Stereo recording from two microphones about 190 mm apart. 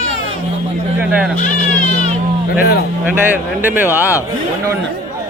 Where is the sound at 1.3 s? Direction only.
45° left (ahead or behind).